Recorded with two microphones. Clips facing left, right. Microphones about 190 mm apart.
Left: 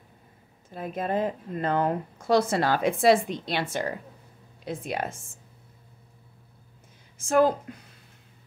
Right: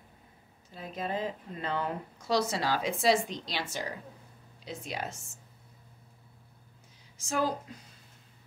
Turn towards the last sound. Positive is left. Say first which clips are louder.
# left 9 dB
turn(degrees=55)  # may be behind; listen again after turning